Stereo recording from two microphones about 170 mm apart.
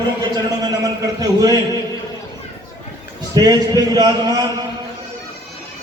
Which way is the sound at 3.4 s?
20° right (ahead or behind).